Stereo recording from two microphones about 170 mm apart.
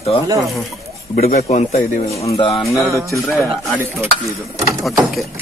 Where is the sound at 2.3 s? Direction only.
30° left (ahead or behind).